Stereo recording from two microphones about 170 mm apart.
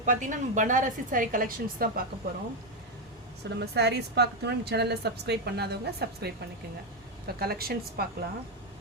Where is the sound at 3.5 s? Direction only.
75° right (ahead or behind).